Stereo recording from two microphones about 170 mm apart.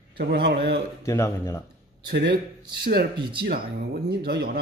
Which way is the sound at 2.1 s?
85° right.